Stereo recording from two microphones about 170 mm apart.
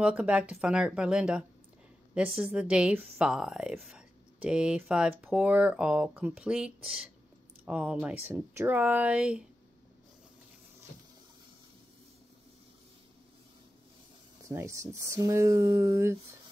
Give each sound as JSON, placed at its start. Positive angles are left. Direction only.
{"t": 0.0, "sound": "speech", "side_deg": -5}
{"t": 14.4, "sound": "speech", "side_deg": -15}